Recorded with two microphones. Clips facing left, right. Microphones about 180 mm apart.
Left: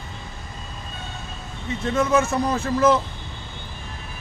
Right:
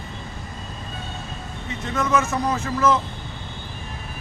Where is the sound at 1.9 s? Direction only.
30° left (ahead or behind).